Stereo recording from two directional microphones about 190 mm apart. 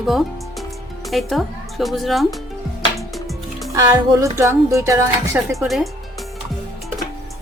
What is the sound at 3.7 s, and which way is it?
Speech, 20° right (ahead or behind).